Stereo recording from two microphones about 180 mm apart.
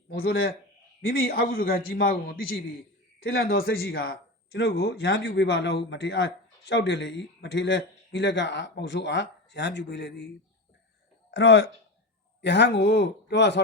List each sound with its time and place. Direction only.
0.1 s a man's voice: 55° left (ahead or behind); by 10.2 s 80° left
11.3 s speech: 80° left